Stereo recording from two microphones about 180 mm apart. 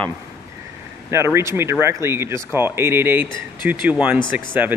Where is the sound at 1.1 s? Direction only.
15° right (ahead or behind).